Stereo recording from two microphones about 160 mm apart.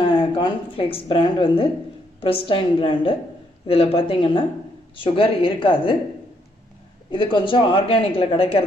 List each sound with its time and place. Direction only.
0.0 s a woman's voice: 30° left (ahead or behind)
7.1 s a woman's voice: 30° left (ahead or behind)